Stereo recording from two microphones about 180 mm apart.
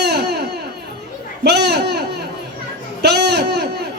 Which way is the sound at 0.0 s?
65° right (ahead or behind).